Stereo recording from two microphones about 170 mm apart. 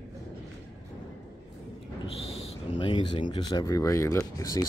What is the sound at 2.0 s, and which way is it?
Owl, 30° left (ahead or behind).